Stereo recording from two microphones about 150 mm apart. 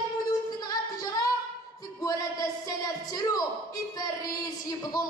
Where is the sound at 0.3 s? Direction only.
25° left (ahead or behind).